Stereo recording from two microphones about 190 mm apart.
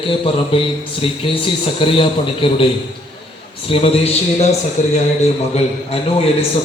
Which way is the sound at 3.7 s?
30° left (ahead or behind).